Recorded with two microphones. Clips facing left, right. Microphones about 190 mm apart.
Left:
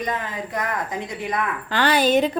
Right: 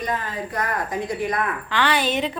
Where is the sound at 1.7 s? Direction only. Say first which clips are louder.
Left 5 dB; 40° left (ahead or behind).